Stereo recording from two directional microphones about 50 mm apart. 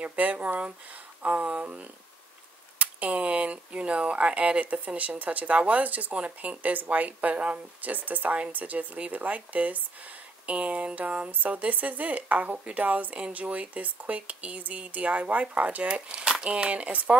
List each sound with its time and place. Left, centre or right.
0.0 s speech: right